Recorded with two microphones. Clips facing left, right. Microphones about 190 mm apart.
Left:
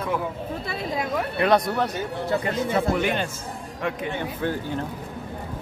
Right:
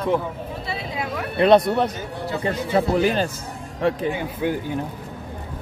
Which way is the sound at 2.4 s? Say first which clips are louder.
Right 2 dB; 30° right (ahead or behind).